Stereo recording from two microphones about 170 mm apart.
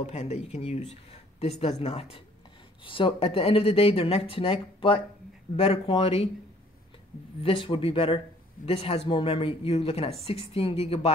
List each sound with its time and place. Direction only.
0.0 s speech: 40° left (ahead or behind)
7.4 s speech: 30° left (ahead or behind)